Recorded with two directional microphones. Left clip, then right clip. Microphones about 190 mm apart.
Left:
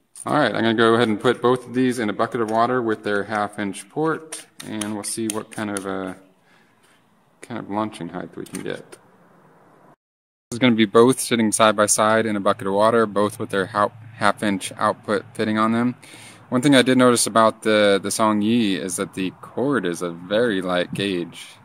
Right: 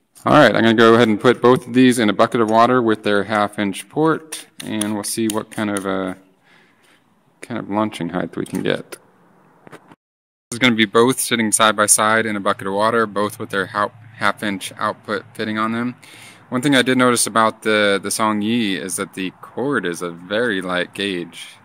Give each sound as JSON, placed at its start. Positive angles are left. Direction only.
{"t": 0.2, "sound": "a man's voice", "side_deg": -40}
{"t": 7.3, "sound": "a man's voice", "side_deg": -25}
{"t": 10.5, "sound": "speech", "side_deg": 5}